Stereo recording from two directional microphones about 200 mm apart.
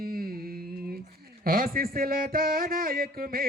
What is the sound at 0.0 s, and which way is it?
Carnatic music, 50° right (ahead or behind).